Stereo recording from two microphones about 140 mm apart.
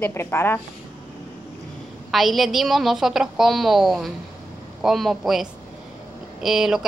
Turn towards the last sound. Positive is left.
turn(degrees=-5)  # may be behind; listen again after turning